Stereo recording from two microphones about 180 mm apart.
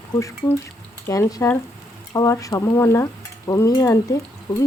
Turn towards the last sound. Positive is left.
turn(degrees=15)  # may be behind; listen again after turning